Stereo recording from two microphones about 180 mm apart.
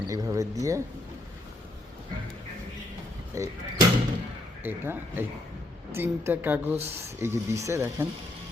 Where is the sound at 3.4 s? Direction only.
15° right (ahead or behind).